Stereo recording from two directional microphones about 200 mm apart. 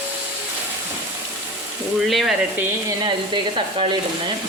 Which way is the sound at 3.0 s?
25° right (ahead or behind).